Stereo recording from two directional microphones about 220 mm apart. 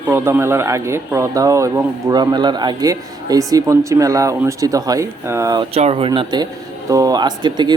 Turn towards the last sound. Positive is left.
turn(degrees=-20)  # may be behind; listen again after turning